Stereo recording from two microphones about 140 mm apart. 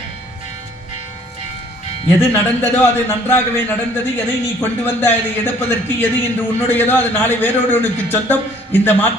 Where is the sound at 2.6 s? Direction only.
15° left (ahead or behind).